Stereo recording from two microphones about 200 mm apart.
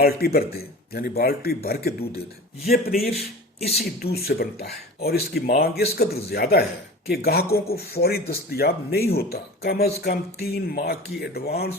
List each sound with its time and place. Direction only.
0.0 s speech: 50° left (ahead or behind)